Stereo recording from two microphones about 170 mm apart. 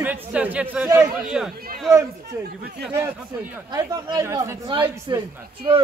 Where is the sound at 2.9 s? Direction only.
15° right (ahead or behind).